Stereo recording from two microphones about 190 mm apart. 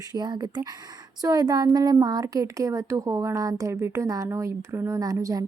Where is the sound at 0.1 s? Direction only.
20° right (ahead or behind).